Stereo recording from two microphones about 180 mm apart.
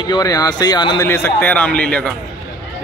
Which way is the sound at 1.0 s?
10° left (ahead or behind).